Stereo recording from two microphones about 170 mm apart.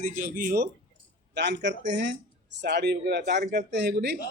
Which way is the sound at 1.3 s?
90° right.